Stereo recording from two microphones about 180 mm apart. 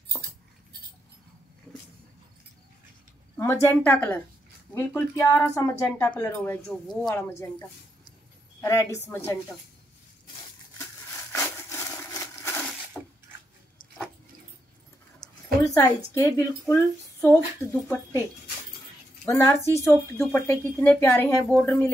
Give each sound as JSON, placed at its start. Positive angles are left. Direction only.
{"t": 3.3, "sound": "speech", "side_deg": 15}
{"t": 8.5, "sound": "speech", "side_deg": 20}
{"t": 11.3, "sound": "a sound", "side_deg": 15}
{"t": 15.1, "sound": "a sound", "side_deg": 20}
{"t": 16.2, "sound": "speech", "side_deg": 20}
{"t": 19.2, "sound": "speech", "side_deg": 15}